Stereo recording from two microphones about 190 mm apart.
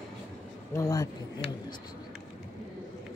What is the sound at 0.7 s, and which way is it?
Speech, 20° left (ahead or behind).